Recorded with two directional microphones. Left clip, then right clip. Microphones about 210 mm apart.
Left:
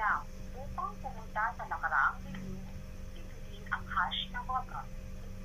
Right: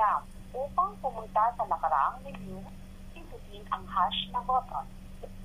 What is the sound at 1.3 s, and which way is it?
Speech, 25° right (ahead or behind).